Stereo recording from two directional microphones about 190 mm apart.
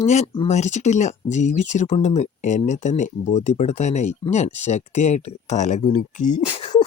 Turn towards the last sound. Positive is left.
turn(degrees=40)  # may be behind; listen again after turning